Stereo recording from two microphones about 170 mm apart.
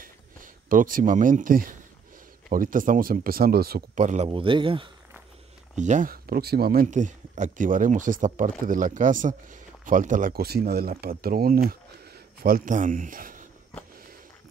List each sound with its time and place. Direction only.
0.0 s a sound: 55° right (ahead or behind)
2.5 s speech: 55° right (ahead or behind)
4.0 s speech: 45° right (ahead or behind)
4.3 s speech: 30° right (ahead or behind)
5.8 s speech: 45° right (ahead or behind)